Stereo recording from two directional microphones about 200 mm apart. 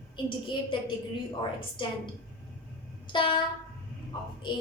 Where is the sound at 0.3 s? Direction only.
25° left (ahead or behind).